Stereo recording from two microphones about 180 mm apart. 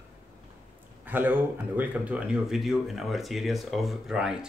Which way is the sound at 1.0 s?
10° right (ahead or behind).